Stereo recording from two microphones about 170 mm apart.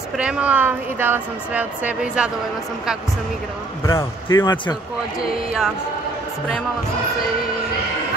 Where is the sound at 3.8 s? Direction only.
20° left (ahead or behind).